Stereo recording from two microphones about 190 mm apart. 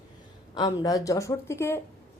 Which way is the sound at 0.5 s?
20° left (ahead or behind).